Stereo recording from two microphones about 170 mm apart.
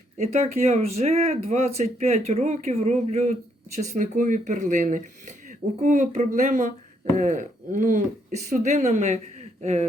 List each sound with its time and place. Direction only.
0.2 s speech: 40° right (ahead or behind)